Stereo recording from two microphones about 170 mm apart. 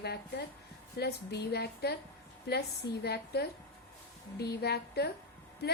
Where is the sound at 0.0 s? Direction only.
75° left (ahead or behind).